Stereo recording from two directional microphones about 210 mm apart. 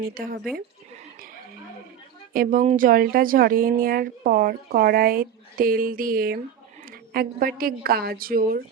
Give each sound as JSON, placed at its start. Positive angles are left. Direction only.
{"t": 0.0, "sound": "speech", "side_deg": -40}
{"t": 2.3, "sound": "speech", "side_deg": -40}